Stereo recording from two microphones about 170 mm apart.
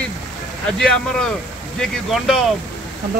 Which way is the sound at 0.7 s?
5° left (ahead or behind).